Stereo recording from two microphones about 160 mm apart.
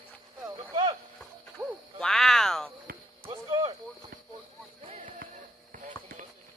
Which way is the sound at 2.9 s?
70° right (ahead or behind).